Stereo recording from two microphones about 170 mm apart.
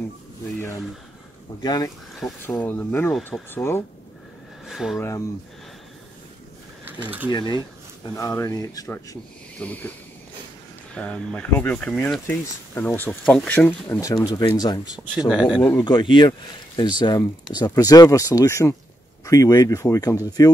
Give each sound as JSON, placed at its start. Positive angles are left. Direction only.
{"t": 1.6, "sound": "speech", "side_deg": 20}
{"t": 2.4, "sound": "speech", "side_deg": 10}
{"t": 4.6, "sound": "speech", "side_deg": 0}
{"t": 6.9, "sound": "speech", "side_deg": -10}
{"t": 7.2, "sound": "speech", "side_deg": 25}
{"t": 11.0, "sound": "speech", "side_deg": 5}
{"t": 15.1, "sound": "speech", "side_deg": -5}
{"t": 15.8, "sound": "speech", "side_deg": 25}